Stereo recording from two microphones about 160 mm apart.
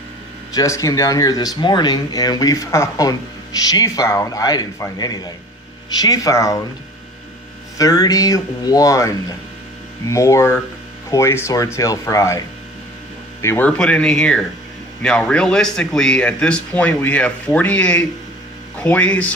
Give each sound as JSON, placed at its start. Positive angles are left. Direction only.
{"t": 0.5, "sound": "speech", "side_deg": 20}
{"t": 7.8, "sound": "speech", "side_deg": 25}
{"t": 13.4, "sound": "speech", "side_deg": 15}